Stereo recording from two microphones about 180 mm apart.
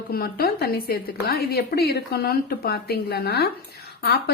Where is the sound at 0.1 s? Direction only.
55° left (ahead or behind).